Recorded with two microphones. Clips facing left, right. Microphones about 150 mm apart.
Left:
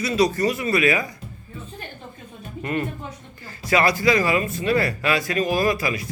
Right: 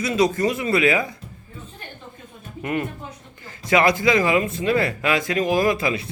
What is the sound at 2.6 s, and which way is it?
A man's voice, 15° right (ahead or behind).